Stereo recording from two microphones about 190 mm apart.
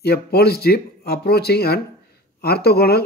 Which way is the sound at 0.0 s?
55° left (ahead or behind).